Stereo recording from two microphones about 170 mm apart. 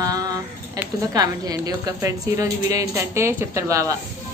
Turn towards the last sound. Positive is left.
turn(degrees=-20)  # may be behind; listen again after turning